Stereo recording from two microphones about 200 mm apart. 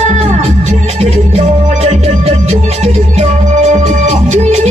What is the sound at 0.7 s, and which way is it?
Music, 30° right (ahead or behind).